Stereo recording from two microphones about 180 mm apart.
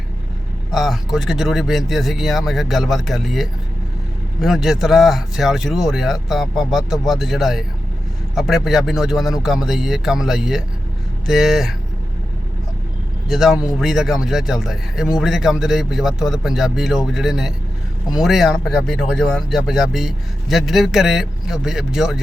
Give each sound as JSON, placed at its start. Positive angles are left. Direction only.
{"t": 0.7, "sound": "a man's voice", "side_deg": 0}
{"t": 13.2, "sound": "a man's voice", "side_deg": 0}